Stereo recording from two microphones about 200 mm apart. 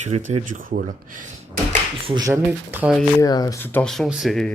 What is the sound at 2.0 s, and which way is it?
Speech, 25° right (ahead or behind).